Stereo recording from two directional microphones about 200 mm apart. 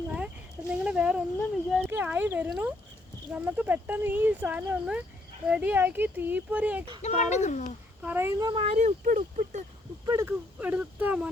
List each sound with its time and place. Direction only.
0.9 s a sound: 5° right (ahead or behind)
1.9 s speech: 10° right (ahead or behind)
7.0 s speech: 35° left (ahead or behind)
8.0 s speech: 10° right (ahead or behind); by 9.6 s 40° right (ahead or behind)
10.1 s speech: 15° right (ahead or behind)